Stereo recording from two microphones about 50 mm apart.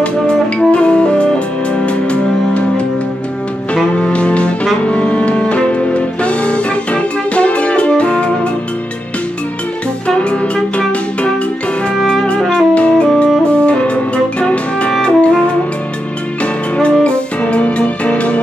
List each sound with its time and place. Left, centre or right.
0.0 s music: left
3.9 s music: left
10.0 s music: left
12.4 s music: centre
12.7 s saxophone: left
13.5 s music: left
16.7 s music: left